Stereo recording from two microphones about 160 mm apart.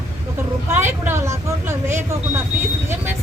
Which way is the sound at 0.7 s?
15° right (ahead or behind).